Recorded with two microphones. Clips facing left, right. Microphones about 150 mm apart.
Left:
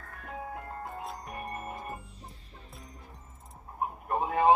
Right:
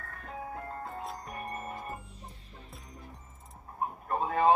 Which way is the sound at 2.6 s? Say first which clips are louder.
Left 3 dB; centre (ahead or behind).